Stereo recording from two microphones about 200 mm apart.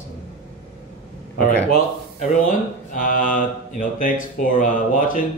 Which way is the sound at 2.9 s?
45° left (ahead or behind).